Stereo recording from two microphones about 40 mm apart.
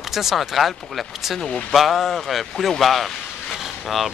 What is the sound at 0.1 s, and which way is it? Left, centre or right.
Speech, centre.